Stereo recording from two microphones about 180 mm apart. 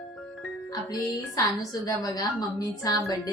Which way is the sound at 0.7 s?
20° left (ahead or behind).